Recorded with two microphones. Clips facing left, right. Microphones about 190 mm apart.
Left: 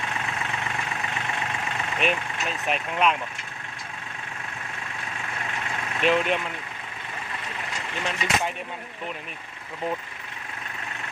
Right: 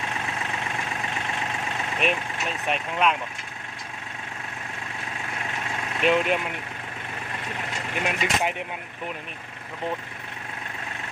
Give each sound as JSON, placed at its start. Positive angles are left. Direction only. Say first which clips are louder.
{"t": 2.0, "sound": "speech", "louder": "even", "side_deg": 0}
{"t": 6.0, "sound": "speech", "louder": "right 1 dB", "side_deg": 0}
{"t": 8.0, "sound": "speech", "louder": "right 1 dB", "side_deg": -15}